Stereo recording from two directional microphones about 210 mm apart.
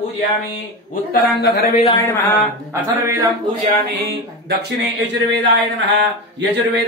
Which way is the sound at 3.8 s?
50° right (ahead or behind).